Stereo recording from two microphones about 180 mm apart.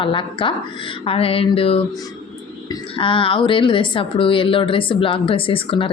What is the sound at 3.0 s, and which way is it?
Speech, 30° left (ahead or behind).